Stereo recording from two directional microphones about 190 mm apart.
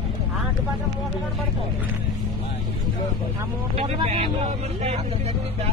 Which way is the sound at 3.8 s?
35° right (ahead or behind).